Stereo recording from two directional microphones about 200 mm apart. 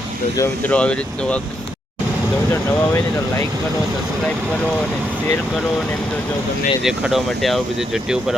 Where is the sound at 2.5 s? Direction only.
10° left (ahead or behind).